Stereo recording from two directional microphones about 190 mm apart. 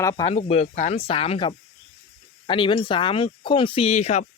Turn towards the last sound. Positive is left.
turn(degrees=35)  # may be behind; listen again after turning